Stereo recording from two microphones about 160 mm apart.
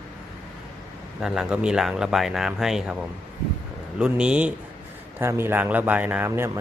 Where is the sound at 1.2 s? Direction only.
5° right (ahead or behind).